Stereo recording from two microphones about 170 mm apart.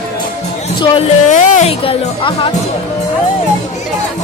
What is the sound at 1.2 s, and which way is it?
Speech, 45° left (ahead or behind).